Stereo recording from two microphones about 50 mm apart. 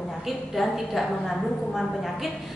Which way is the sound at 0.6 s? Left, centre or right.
Centre.